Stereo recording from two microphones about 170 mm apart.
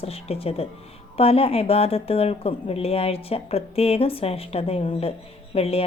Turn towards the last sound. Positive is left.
turn(degrees=35)  # may be behind; listen again after turning